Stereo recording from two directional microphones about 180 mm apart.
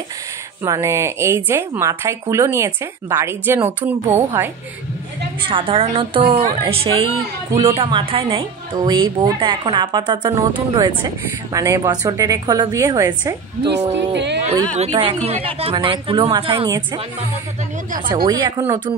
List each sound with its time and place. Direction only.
0.7 s speech: 15° right (ahead or behind)
5.5 s a woman's voice: 30° right (ahead or behind)
14.1 s speech: 70° right (ahead or behind)
14.5 s a woman's voice: 10° left (ahead or behind)
14.8 s a woman's voice: 30° right (ahead or behind)
18.1 s a woman's voice: 25° right (ahead or behind)